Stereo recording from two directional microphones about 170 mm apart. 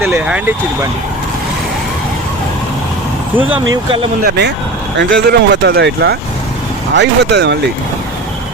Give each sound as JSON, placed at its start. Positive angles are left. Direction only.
{"t": 0.0, "sound": "speech", "side_deg": -10}
{"t": 4.2, "sound": "speech", "side_deg": -80}
{"t": 6.9, "sound": "speech", "side_deg": -90}